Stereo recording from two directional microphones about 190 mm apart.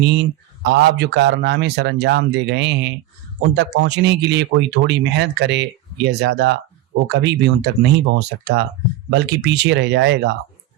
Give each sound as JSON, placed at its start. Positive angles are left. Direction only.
{"t": 0.6, "sound": "speech", "side_deg": -60}